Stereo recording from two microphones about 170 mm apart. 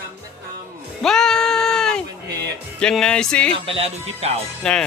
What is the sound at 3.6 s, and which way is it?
Speech, 35° right (ahead or behind).